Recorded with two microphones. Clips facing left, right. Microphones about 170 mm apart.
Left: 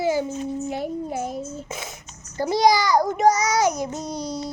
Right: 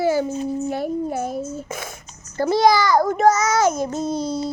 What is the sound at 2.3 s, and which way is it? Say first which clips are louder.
A child's voice: right 2 dB; 15° left (ahead or behind).